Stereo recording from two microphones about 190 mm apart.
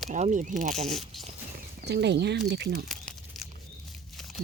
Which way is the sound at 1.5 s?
60° right (ahead or behind).